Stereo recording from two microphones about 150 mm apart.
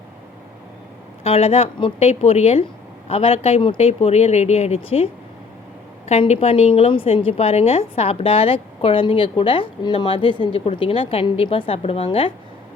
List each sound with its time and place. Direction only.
1.2 s a woman's voice: 40° left (ahead or behind)
6.1 s a woman's voice: 45° left (ahead or behind)